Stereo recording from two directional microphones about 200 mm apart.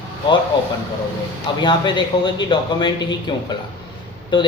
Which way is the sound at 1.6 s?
25° left (ahead or behind).